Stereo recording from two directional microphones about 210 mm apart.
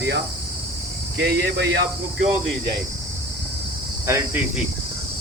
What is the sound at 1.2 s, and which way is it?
Speech, 50° right (ahead or behind).